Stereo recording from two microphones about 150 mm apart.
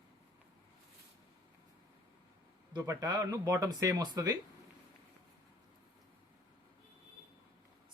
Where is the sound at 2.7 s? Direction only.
25° right (ahead or behind).